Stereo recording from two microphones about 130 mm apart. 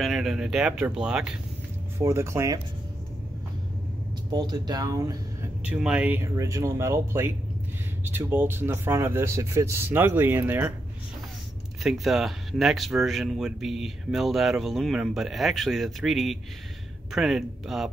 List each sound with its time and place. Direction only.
0.0 s speech: centre (ahead or behind)
2.0 s speech: 20° right (ahead or behind)
4.3 s speech: 30° right (ahead or behind)
5.7 s speech: 10° right (ahead or behind)
6.3 s speech: 25° right (ahead or behind)
11.8 s speech: centre (ahead or behind)